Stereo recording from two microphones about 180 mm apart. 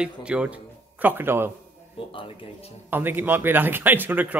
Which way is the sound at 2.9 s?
10° right (ahead or behind).